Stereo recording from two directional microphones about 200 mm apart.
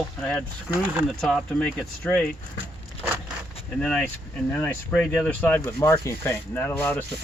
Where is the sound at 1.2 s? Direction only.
5° left (ahead or behind).